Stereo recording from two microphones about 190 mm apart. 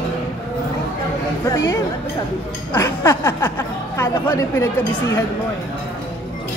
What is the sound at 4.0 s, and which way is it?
Speech, 15° left (ahead or behind).